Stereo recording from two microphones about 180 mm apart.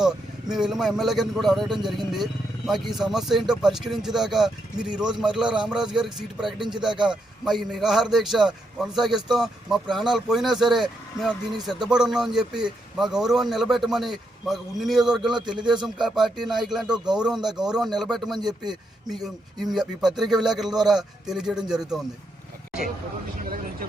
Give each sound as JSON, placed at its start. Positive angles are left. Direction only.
{"t": 0.0, "sound": "speech", "side_deg": -5}
{"t": 18.3, "sound": "speech", "side_deg": -25}
{"t": 19.0, "sound": "speech", "side_deg": 0}
{"t": 23.5, "sound": "speech", "side_deg": -55}